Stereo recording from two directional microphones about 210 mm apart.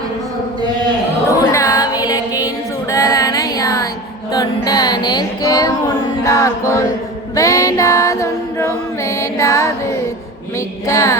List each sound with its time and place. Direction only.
1.4 s music: 15° left (ahead or behind)
2.9 s a sound: 15° left (ahead or behind)
4.3 s music: 20° left (ahead or behind)
10.8 s music: 15° left (ahead or behind)